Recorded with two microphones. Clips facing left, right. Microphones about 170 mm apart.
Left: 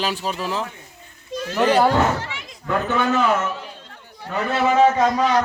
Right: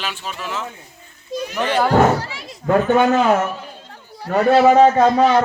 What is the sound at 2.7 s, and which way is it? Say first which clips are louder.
Speech: right 6 dB; 50° right (ahead or behind).